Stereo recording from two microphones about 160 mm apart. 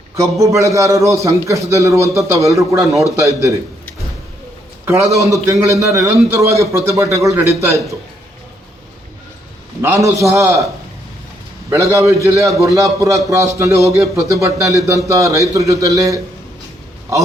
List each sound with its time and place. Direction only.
0.2 s a man's voice: 20° right (ahead or behind)
2.8 s a man's voice: centre (ahead or behind)
3.2 s a man's voice: 20° right (ahead or behind)
4.9 s a man's voice: 20° right (ahead or behind)
9.8 s a man's voice: 20° right (ahead or behind)
11.7 s a man's voice: 20° right (ahead or behind)